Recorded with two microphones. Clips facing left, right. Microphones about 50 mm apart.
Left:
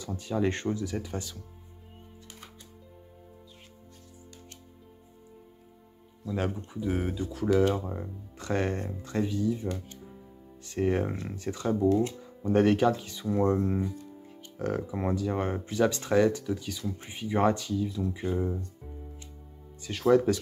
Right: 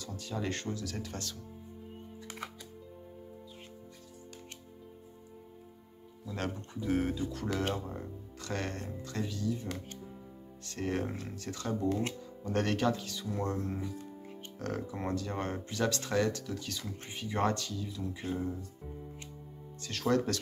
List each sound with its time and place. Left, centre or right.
0.0 s speech: left
0.9 s speech: centre
6.3 s speech: centre
14.6 s speech: centre
19.8 s speech: centre